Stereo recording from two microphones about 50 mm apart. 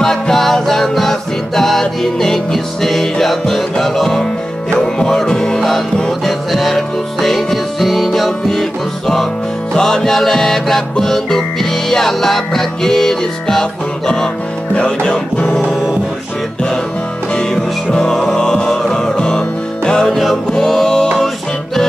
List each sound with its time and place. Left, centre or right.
0.0 s music: centre
17.4 s music: centre
20.1 s music: centre